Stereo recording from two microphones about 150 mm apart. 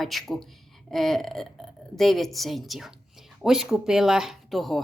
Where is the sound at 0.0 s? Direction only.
Centre (ahead or behind).